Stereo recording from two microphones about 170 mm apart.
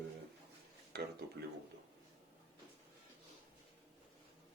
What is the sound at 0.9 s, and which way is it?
Speech, 70° right (ahead or behind).